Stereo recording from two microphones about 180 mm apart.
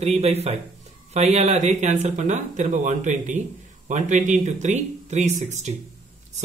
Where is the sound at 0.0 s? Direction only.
35° right (ahead or behind).